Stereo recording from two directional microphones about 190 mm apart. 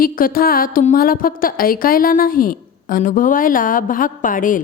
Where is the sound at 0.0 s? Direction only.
50° left (ahead or behind).